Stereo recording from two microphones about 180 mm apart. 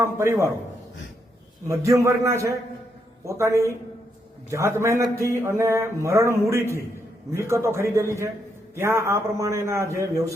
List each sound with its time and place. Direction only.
0.0 s a man's voice: 15° right (ahead or behind)
1.6 s a man's voice: 15° right (ahead or behind)